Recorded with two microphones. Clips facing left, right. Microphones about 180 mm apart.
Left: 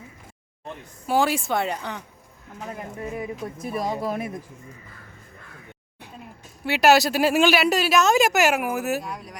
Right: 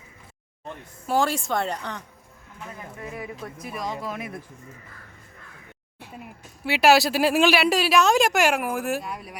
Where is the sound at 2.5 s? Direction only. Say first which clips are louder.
Left 5 dB; 35° left (ahead or behind).